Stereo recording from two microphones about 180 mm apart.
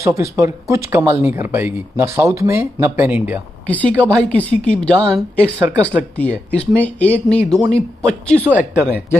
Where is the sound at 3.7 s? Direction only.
10° left (ahead or behind).